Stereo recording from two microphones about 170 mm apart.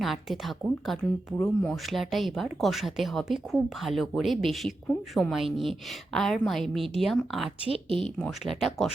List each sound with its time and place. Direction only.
0.0 s speech: centre (ahead or behind)
7.7 s speech: 30° right (ahead or behind)
8.0 s speech: 5° left (ahead or behind)